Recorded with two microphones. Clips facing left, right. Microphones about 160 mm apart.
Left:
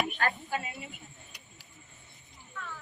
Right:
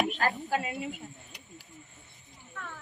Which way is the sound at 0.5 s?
90° right.